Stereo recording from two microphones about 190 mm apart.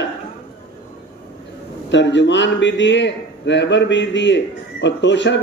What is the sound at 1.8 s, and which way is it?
A man's voice, 70° left (ahead or behind).